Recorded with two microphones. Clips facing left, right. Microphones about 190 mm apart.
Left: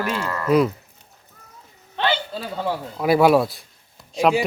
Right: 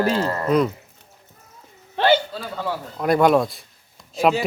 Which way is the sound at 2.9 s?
5° left (ahead or behind).